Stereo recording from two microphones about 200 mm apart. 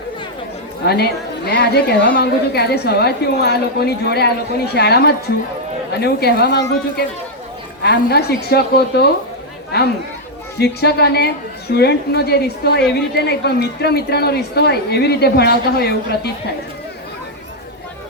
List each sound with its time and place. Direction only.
1.5 s a woman's voice: 55° left (ahead or behind)